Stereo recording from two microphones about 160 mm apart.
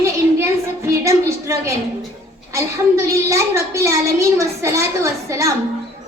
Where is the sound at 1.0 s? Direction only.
20° right (ahead or behind).